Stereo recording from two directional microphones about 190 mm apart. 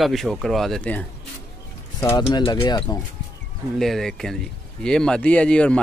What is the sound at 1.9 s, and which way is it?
Speech, 15° left (ahead or behind).